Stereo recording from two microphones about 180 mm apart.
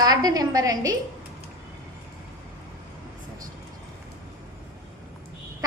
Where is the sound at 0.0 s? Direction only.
20° right (ahead or behind).